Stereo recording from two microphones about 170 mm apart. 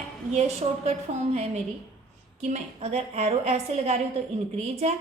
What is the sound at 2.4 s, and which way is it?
A woman's voice, 40° right (ahead or behind).